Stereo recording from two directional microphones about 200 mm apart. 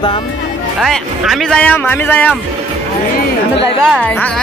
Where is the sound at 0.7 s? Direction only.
Centre (ahead or behind).